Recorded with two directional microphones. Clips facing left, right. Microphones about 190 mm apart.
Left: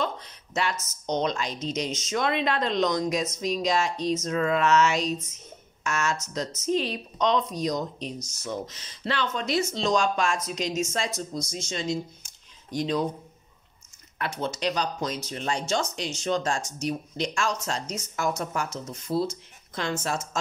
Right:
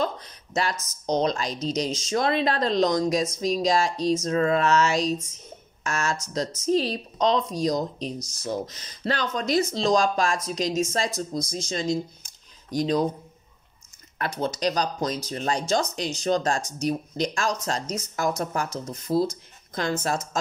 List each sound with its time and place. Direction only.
0.0 s speech: 40° right (ahead or behind)
14.1 s speech: 40° right (ahead or behind)